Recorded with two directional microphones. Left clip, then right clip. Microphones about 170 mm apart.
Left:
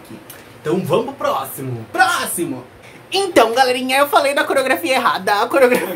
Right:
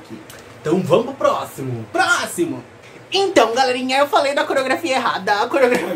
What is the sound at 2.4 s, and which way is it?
A woman's voice, 25° left (ahead or behind).